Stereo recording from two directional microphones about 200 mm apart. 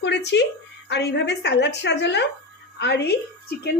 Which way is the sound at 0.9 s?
60° left (ahead or behind).